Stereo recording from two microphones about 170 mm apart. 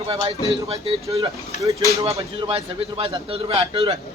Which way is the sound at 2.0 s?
35° right (ahead or behind).